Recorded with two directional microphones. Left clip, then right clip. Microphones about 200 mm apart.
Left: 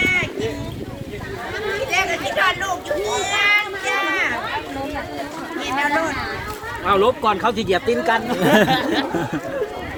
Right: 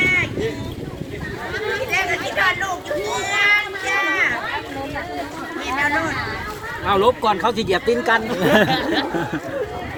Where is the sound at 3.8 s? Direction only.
5° left (ahead or behind).